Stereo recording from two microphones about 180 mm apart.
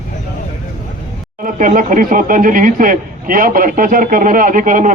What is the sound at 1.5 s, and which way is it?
A man's voice, 45° right (ahead or behind).